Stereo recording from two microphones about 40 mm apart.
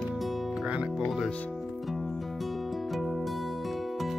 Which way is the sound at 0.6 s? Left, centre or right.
Right.